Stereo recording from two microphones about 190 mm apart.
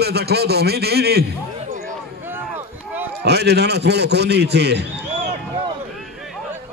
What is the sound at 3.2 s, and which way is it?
A man's voice, 60° right (ahead or behind).